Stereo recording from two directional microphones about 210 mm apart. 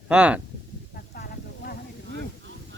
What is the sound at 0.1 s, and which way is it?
Speech, 5° right (ahead or behind).